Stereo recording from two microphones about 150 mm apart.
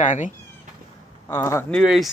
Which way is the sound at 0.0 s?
60° left (ahead or behind).